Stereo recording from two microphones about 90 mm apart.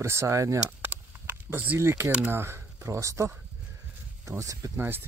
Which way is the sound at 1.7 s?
25° right (ahead or behind).